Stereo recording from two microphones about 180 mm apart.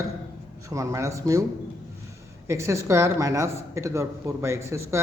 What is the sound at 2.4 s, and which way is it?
Speech, 15° right (ahead or behind).